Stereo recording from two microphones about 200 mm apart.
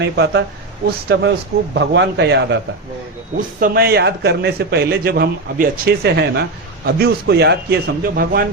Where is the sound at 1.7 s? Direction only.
60° right (ahead or behind).